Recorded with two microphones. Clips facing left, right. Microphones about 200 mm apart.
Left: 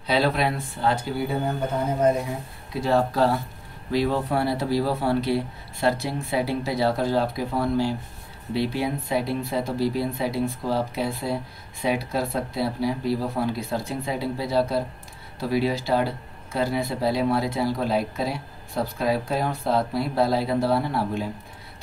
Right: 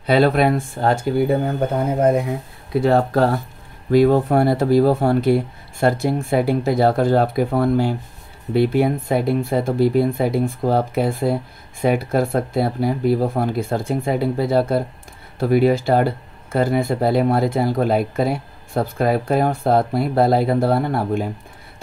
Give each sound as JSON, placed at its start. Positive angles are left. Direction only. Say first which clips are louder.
{"t": 0.0, "sound": "speech", "louder": "right 7 dB", "side_deg": -55}